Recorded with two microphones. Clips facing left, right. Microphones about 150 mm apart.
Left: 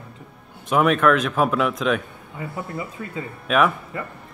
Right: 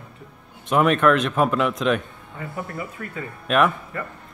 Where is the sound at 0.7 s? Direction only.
Centre (ahead or behind).